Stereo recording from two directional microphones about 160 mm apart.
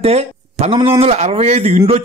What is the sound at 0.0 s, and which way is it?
Speech, 40° right (ahead or behind).